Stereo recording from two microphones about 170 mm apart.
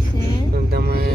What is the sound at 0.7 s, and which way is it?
Vehicle, 70° right (ahead or behind).